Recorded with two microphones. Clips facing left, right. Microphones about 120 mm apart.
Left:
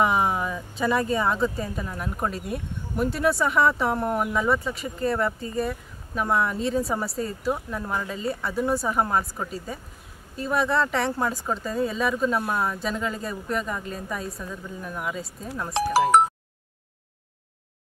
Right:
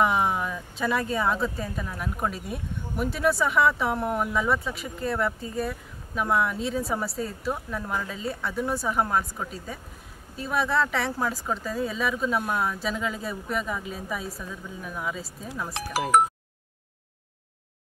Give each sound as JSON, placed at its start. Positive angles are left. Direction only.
{"t": 0.0, "sound": "speech", "side_deg": 0}
{"t": 15.7, "sound": "speech", "side_deg": 30}